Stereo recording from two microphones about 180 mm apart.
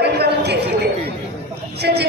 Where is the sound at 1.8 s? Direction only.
65° right (ahead or behind).